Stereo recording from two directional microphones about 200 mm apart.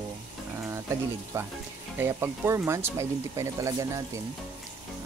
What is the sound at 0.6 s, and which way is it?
Speech, 15° right (ahead or behind).